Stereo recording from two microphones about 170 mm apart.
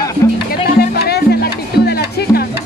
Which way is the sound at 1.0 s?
70° left (ahead or behind).